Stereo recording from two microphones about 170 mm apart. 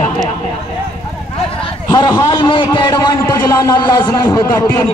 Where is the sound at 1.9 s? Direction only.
20° left (ahead or behind).